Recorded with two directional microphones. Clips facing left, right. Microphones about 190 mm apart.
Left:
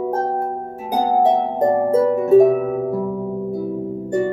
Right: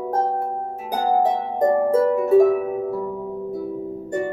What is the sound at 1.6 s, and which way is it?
Harp, 25° left (ahead or behind).